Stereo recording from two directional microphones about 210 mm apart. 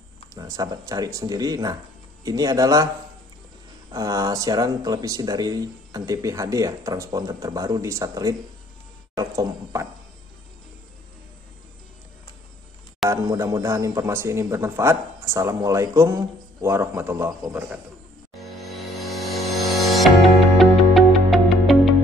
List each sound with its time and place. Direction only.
0.3 s speech: 15° right (ahead or behind)
3.9 s speech: 15° right (ahead or behind)
13.1 s speech: 15° right (ahead or behind)
19.3 s a sound: centre (ahead or behind)
20.5 s music: centre (ahead or behind)